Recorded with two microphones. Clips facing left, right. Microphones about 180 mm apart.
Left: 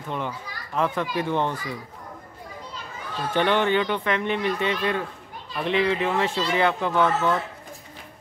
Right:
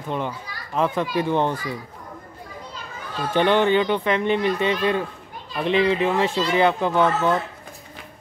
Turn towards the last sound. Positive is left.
turn(degrees=-25)  # may be behind; listen again after turning